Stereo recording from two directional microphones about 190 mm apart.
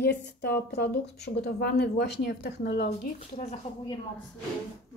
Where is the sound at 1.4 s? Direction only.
60° left (ahead or behind).